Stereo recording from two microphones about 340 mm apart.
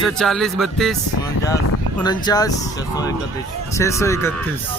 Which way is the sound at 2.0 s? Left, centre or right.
Centre.